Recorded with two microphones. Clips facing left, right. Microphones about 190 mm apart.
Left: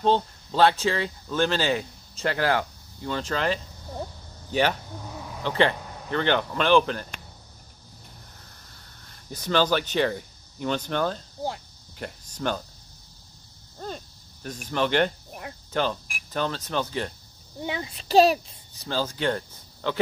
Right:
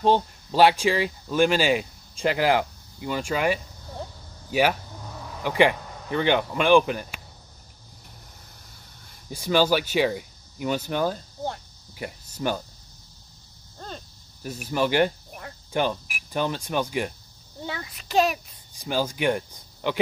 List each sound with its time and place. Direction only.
0.0 s speech: 15° right (ahead or behind)
9.3 s speech: 10° right (ahead or behind)
13.7 s a sound: 5° left (ahead or behind)
14.4 s speech: 5° right (ahead or behind)
17.6 s a child's voice: 20° left (ahead or behind)
18.8 s speech: 15° right (ahead or behind)